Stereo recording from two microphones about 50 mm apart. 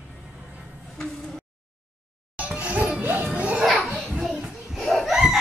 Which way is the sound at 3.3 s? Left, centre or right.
Right.